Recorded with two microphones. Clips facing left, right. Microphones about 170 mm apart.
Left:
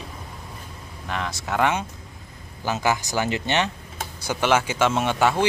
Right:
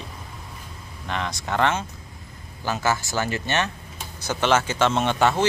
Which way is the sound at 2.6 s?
15° left (ahead or behind).